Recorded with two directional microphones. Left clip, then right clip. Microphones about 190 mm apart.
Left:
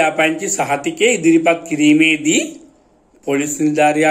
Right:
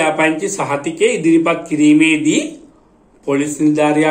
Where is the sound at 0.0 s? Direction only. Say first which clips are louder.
Right 1 dB; 50° left (ahead or behind).